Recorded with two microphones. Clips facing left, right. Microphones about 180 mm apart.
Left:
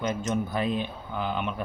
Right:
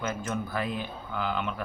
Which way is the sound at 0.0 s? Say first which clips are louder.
Left 4 dB; 20° left (ahead or behind).